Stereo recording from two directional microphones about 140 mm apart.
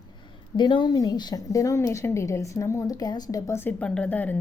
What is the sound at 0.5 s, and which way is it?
A woman's voice, 35° left (ahead or behind).